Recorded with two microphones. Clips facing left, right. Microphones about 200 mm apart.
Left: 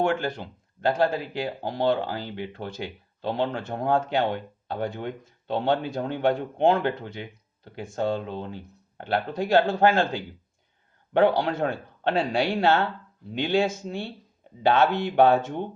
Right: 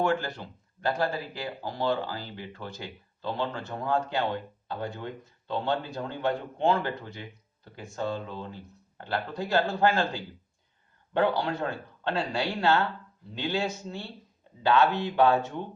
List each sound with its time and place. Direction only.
0.0 s speech: 50° left (ahead or behind)
0.9 s speech: 65° left (ahead or behind)
11.1 s speech: 60° left (ahead or behind)